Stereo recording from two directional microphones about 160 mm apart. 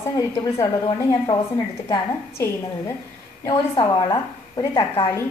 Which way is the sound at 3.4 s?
25° left (ahead or behind).